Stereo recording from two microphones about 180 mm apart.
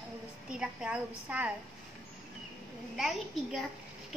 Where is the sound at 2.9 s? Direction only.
Centre (ahead or behind).